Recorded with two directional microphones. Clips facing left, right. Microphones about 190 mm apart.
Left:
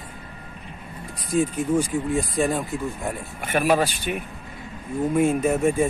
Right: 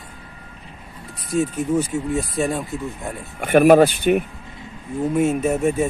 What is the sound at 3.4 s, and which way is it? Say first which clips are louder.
Speech: right 9 dB; 50° right (ahead or behind).